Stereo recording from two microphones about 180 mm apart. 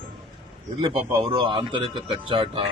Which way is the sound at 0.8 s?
30° right (ahead or behind).